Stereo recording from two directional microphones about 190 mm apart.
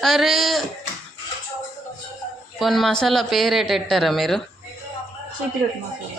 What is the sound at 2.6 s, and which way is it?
Speech, centre (ahead or behind).